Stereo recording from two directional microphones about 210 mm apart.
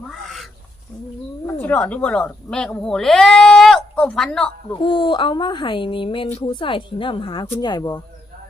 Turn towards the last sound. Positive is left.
turn(degrees=20)  # may be behind; listen again after turning